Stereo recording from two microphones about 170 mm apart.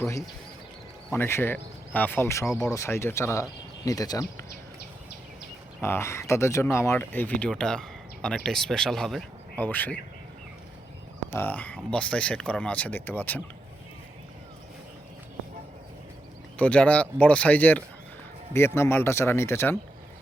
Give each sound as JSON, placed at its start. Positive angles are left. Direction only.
{"t": 0.0, "sound": "speech", "side_deg": 20}
{"t": 5.8, "sound": "speech", "side_deg": 15}
{"t": 11.3, "sound": "speech", "side_deg": 10}
{"t": 16.6, "sound": "speech", "side_deg": 10}